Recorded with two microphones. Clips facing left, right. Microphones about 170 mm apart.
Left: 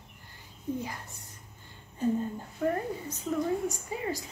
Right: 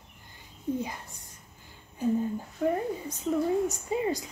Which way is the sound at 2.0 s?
5° right (ahead or behind).